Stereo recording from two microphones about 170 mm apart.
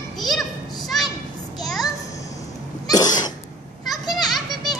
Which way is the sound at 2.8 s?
20° left (ahead or behind).